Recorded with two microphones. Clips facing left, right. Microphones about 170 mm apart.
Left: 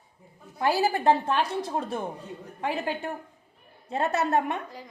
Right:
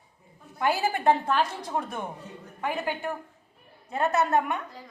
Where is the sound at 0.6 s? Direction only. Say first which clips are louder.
Left 1 dB; 35° left (ahead or behind).